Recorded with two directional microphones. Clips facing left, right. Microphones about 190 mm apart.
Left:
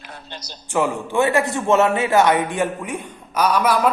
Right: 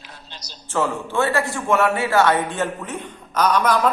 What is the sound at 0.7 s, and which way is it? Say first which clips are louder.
A man's voice: left 2 dB; 15° left (ahead or behind).